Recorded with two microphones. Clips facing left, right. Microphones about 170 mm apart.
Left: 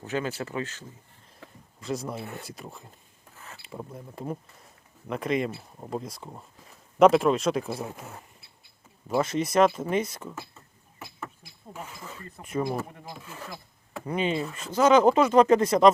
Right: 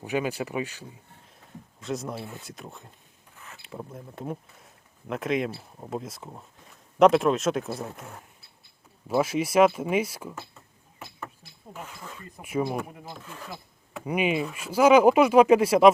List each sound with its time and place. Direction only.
0.0 s speech: 15° right (ahead or behind)
1.4 s a sound: 90° left
1.8 s speech: centre (ahead or behind)
11.4 s a sound: 10° left (ahead or behind)
12.4 s speech: 10° right (ahead or behind)
13.1 s speech: 5° left (ahead or behind)
13.9 s speech: 10° right (ahead or behind)